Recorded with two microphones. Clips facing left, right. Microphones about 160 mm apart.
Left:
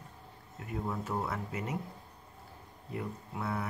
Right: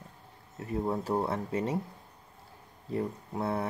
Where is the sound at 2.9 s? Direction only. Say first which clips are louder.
Right 6 dB; 30° right (ahead or behind).